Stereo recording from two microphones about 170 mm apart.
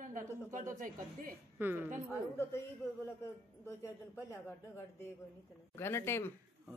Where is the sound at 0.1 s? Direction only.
50° right (ahead or behind).